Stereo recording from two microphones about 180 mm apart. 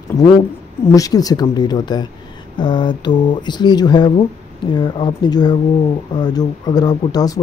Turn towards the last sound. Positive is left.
turn(degrees=20)  # may be behind; listen again after turning